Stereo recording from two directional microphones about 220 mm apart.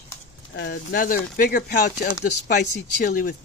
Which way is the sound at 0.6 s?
45° left (ahead or behind).